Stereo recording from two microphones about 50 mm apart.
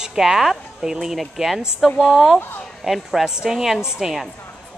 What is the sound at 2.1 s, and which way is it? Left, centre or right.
Speech, centre.